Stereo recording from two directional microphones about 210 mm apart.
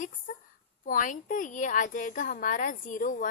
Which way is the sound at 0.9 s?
40° left (ahead or behind).